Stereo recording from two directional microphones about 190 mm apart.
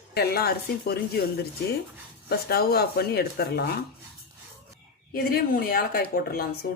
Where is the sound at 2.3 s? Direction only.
55° left (ahead or behind).